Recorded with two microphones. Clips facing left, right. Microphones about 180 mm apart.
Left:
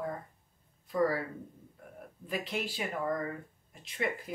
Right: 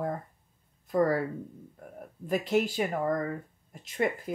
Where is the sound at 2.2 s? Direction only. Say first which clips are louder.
Right 9 dB; 45° right (ahead or behind).